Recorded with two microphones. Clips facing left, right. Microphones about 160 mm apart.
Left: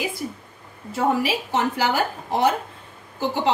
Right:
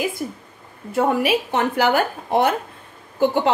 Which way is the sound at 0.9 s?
55° right (ahead or behind).